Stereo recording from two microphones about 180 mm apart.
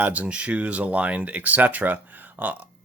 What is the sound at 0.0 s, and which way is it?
Speech, 5° right (ahead or behind).